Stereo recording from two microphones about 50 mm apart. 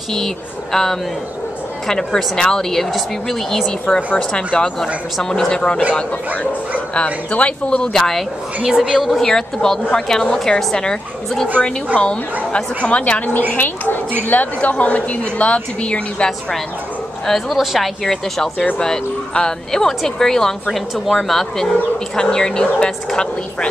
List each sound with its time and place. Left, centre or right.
0.1 s a sound: centre
1.9 s a woman's voice: centre
3.9 s a woman's voice: centre
5.9 s a woman's voice: left
8.6 s a woman's voice: centre
8.9 s speech: centre
9.2 s a woman's voice: centre
14.2 s a woman's voice: left
17.3 s a woman's voice: centre